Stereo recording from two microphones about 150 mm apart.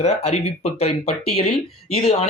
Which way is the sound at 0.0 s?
45° left (ahead or behind).